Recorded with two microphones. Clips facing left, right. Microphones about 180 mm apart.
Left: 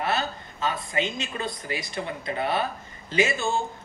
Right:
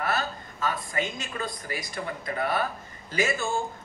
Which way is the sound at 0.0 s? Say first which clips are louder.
Left 2 dB; 25° left (ahead or behind).